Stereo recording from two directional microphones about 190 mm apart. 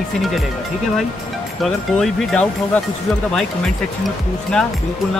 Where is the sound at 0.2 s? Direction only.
Centre (ahead or behind).